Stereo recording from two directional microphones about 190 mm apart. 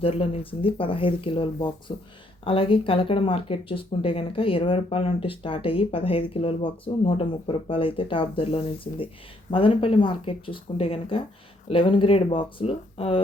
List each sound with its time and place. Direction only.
0.0 s speech: 30° left (ahead or behind)